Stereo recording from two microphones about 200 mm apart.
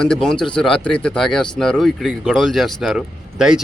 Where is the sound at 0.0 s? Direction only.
5° left (ahead or behind).